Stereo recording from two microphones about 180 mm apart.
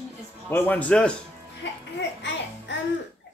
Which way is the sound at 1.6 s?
80° left.